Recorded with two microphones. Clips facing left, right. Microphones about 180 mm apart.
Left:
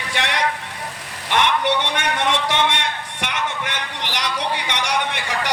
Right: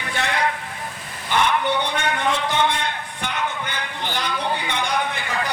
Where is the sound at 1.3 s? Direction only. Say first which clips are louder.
Left 1 dB; 80° left.